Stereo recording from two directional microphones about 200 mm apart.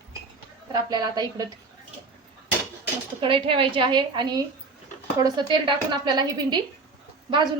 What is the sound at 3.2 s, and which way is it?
A woman's voice, 25° right (ahead or behind).